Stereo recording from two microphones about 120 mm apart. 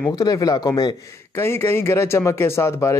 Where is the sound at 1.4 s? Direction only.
20° left (ahead or behind).